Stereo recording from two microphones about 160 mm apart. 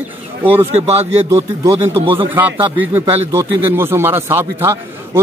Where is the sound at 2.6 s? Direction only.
10° right (ahead or behind).